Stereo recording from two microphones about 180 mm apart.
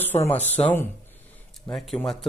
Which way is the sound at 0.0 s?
10° left (ahead or behind).